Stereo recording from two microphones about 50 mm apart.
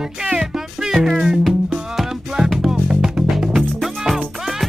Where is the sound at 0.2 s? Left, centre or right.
Centre.